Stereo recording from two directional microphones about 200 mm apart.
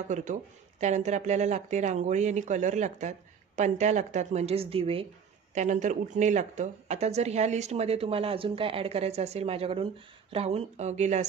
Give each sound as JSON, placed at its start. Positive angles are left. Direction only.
{"t": 0.1, "sound": "a woman's voice", "side_deg": -35}